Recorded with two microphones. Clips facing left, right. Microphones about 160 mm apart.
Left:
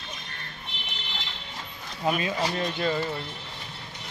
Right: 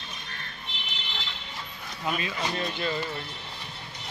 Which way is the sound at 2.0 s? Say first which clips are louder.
Left 4 dB; 35° left (ahead or behind).